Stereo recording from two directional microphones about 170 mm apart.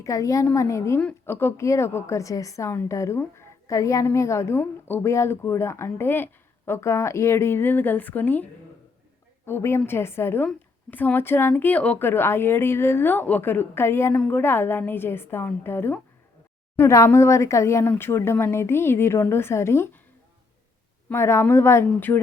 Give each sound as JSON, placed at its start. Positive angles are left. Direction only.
{"t": 0.0, "sound": "a woman's voice", "side_deg": 20}
{"t": 9.5, "sound": "a woman's voice", "side_deg": 15}
{"t": 21.1, "sound": "a woman's voice", "side_deg": 15}